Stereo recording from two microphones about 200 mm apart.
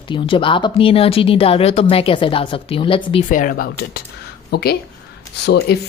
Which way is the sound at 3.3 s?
45° left (ahead or behind).